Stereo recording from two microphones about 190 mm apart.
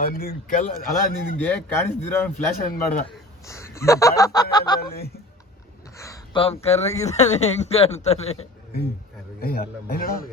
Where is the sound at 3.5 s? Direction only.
15° left (ahead or behind).